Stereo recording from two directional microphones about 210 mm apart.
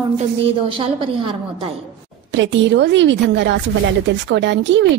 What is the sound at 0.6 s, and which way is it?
Speech, 25° right (ahead or behind).